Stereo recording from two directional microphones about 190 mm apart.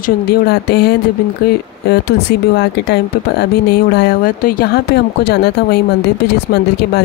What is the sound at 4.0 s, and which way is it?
Speech, 50° left (ahead or behind).